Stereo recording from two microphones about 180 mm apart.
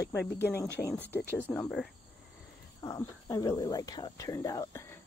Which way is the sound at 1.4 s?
5° left (ahead or behind).